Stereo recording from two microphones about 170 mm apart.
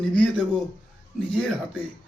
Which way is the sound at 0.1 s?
5° left (ahead or behind).